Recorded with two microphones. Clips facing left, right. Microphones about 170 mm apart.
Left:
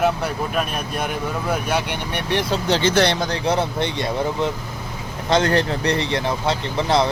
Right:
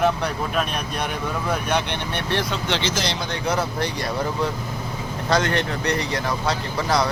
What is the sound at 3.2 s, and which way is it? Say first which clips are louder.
Speech: left 3 dB; 30° left (ahead or behind).